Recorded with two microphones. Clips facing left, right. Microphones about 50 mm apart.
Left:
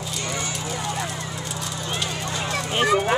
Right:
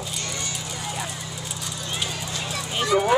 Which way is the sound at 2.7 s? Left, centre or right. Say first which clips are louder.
Left 2 dB; left.